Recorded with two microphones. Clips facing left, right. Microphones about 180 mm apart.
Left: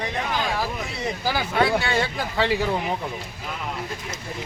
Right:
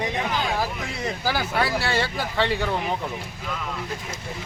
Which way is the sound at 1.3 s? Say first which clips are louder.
Left 4 dB; 5° right (ahead or behind).